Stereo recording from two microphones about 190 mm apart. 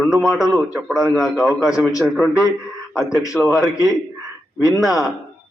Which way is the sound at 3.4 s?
5° right (ahead or behind).